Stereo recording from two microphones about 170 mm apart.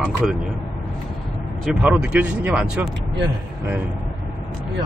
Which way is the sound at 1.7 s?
10° right (ahead or behind).